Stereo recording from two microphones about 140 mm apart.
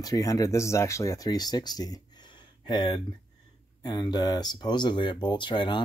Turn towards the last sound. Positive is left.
turn(degrees=35)  # may be behind; listen again after turning